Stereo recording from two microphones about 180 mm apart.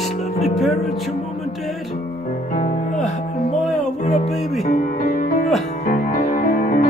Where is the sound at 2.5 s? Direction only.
45° left (ahead or behind).